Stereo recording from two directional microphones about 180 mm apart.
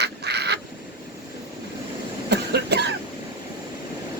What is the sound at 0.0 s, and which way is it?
Duck, 65° right (ahead or behind).